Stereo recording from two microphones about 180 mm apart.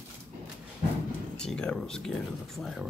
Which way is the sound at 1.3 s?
5° left (ahead or behind).